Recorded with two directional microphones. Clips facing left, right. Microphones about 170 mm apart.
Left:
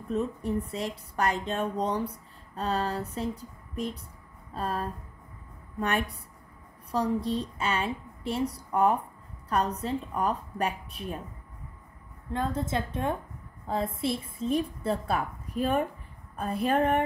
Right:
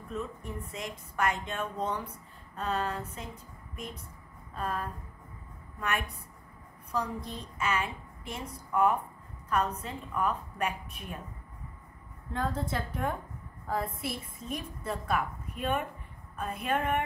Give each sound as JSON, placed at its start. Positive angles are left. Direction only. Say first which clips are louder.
{"t": 0.1, "sound": "a woman's voice", "louder": "left 9 dB", "side_deg": 35}
{"t": 12.3, "sound": "a woman's voice", "louder": "left 3 dB", "side_deg": 20}